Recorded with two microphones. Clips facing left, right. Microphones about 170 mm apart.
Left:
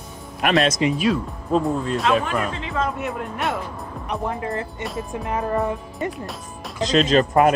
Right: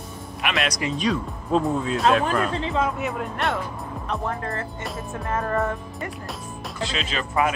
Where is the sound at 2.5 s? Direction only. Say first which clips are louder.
Right 4 dB; 35° right (ahead or behind).